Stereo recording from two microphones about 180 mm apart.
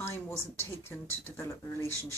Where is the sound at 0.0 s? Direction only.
15° left (ahead or behind).